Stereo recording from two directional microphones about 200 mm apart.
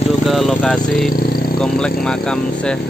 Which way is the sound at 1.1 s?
45° left (ahead or behind).